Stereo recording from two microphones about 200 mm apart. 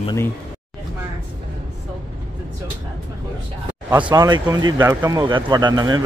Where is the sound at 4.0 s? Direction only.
20° right (ahead or behind).